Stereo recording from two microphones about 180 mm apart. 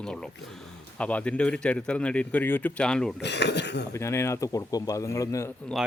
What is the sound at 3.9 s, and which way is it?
Speech, 15° left (ahead or behind).